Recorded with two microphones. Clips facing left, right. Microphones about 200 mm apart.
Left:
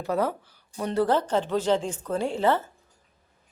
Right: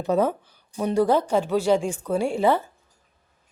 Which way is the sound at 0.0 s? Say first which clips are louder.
Right 4 dB; 20° right (ahead or behind).